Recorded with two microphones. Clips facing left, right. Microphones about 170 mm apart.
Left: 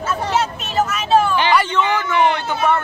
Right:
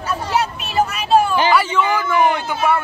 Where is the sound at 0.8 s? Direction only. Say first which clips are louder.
Even; 40° right (ahead or behind).